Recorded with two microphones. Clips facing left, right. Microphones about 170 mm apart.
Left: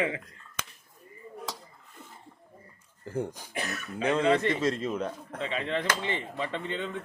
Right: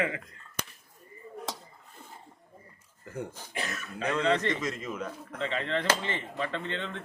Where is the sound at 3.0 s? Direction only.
30° left (ahead or behind).